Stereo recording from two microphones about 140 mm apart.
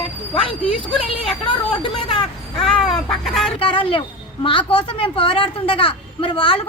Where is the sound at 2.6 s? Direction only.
Centre (ahead or behind).